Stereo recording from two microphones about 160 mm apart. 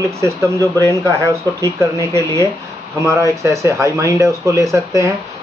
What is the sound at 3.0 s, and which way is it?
Speech, 20° right (ahead or behind).